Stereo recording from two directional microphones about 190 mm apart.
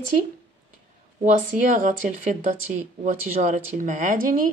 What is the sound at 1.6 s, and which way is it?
A woman's voice, 45° right (ahead or behind).